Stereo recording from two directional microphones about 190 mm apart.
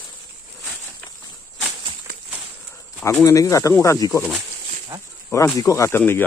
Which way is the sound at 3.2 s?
15° left (ahead or behind).